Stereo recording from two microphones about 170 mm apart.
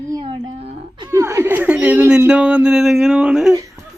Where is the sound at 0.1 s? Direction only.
25° right (ahead or behind).